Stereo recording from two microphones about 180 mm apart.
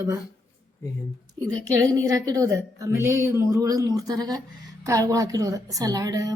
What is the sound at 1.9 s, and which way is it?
A woman's voice, 20° right (ahead or behind).